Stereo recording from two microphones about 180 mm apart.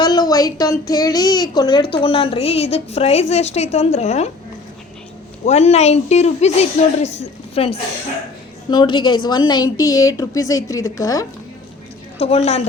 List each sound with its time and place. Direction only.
0.0 s speech: 20° left (ahead or behind); by 4.3 s 40° left (ahead or behind)
5.5 s a woman's voice: 35° left (ahead or behind); by 11.3 s 20° left (ahead or behind)
12.2 s speech: 35° left (ahead or behind)